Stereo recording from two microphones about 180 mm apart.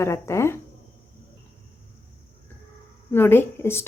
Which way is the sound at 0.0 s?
15° left (ahead or behind).